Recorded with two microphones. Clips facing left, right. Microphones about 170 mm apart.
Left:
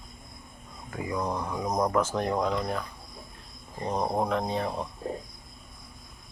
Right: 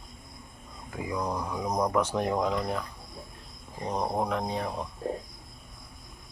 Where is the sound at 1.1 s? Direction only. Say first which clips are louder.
Left 1 dB; 5° left (ahead or behind).